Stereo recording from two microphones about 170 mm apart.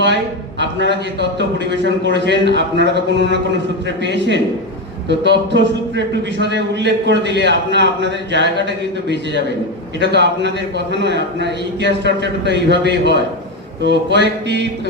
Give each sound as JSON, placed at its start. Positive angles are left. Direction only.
{"t": 0.6, "sound": "a man's voice", "side_deg": -90}
{"t": 10.0, "sound": "a man's voice", "side_deg": -90}